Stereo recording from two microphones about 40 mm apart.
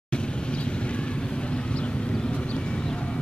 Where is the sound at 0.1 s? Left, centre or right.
Left.